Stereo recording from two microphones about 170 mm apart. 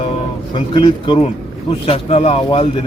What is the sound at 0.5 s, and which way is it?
A man's voice, 30° left (ahead or behind).